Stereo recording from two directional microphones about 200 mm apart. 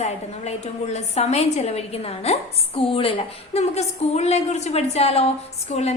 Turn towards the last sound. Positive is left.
turn(degrees=35)  # may be behind; listen again after turning